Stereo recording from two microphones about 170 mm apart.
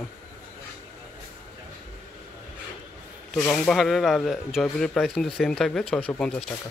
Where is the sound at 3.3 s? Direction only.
5° left (ahead or behind).